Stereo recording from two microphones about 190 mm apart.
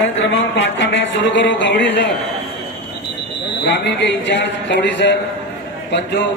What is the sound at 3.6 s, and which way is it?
Speech, 65° left (ahead or behind).